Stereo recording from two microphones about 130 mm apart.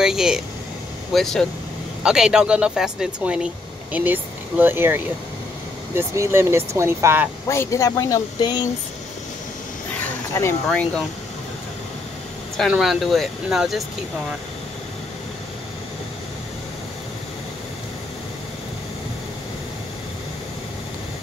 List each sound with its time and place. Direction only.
0.0 s vehicle: 5° right (ahead or behind)
1.1 s speech: centre (ahead or behind); by 7.2 s 20° right (ahead or behind)
7.4 s speech: 20° left (ahead or behind)
10.7 s speech: 10° left (ahead or behind)
12.5 s speech: centre (ahead or behind)